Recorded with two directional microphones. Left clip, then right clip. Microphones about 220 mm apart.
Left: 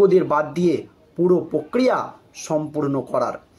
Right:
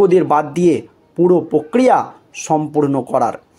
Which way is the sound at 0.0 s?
40° right (ahead or behind).